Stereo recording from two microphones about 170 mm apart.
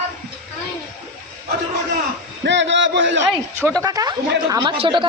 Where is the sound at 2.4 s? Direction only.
90° right.